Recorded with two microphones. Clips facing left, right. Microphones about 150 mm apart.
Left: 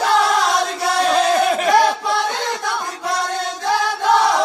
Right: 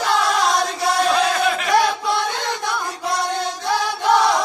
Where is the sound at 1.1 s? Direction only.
40° left (ahead or behind).